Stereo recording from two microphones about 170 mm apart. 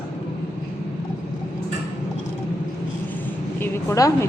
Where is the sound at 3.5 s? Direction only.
20° left (ahead or behind).